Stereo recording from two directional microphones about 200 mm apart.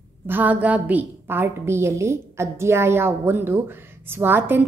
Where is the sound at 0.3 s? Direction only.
10° right (ahead or behind).